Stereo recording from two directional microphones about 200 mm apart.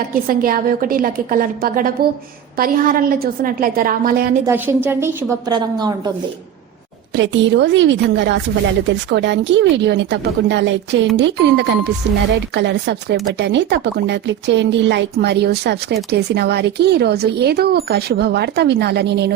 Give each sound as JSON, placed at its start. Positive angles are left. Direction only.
{"t": 0.1, "sound": "a woman's voice", "side_deg": -45}
{"t": 4.4, "sound": "a woman's voice", "side_deg": -10}
{"t": 7.2, "sound": "speech", "side_deg": -60}